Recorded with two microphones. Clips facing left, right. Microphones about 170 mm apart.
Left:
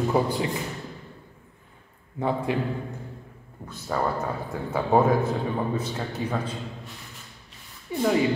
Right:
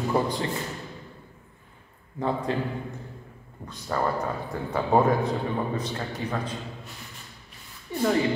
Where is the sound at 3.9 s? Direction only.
5° left (ahead or behind).